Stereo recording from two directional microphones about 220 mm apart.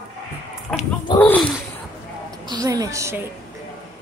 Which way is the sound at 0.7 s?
5° left (ahead or behind).